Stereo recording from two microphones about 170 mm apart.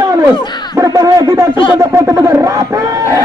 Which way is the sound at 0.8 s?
20° right (ahead or behind).